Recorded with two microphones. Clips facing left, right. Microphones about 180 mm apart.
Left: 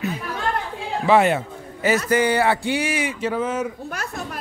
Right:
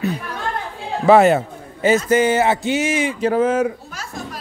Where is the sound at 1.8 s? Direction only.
25° right (ahead or behind).